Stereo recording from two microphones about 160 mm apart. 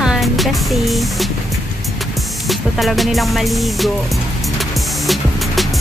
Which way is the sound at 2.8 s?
Centre (ahead or behind).